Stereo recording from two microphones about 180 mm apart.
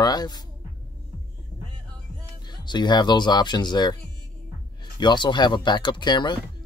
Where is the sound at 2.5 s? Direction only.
25° left (ahead or behind).